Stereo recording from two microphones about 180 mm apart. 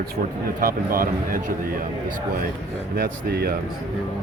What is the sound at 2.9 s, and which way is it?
Speech, 55° right (ahead or behind).